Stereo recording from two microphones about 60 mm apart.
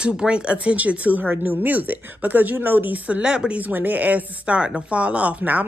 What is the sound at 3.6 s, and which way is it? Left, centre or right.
Speech, right.